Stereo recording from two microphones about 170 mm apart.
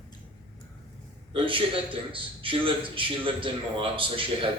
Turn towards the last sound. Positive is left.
turn(degrees=-30)  # may be behind; listen again after turning